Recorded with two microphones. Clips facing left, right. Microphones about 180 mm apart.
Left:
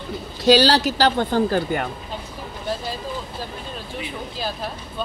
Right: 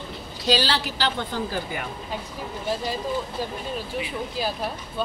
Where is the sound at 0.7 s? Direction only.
40° left (ahead or behind).